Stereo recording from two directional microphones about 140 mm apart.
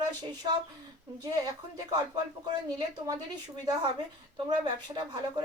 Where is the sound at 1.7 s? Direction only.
30° right (ahead or behind).